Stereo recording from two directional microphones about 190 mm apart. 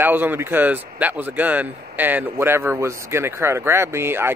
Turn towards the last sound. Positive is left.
turn(degrees=-10)  # may be behind; listen again after turning